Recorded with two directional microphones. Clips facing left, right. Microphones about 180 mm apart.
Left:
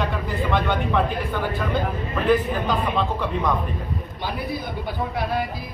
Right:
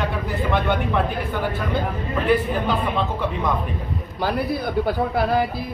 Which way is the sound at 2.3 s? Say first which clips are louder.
Even; 10° right (ahead or behind).